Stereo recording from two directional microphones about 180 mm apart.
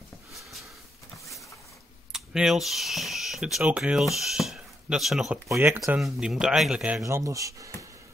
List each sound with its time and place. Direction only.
2.1 s speech: centre (ahead or behind)
5.5 s speech: 15° right (ahead or behind)
5.9 s speech: centre (ahead or behind)
7.0 s speech: 15° right (ahead or behind)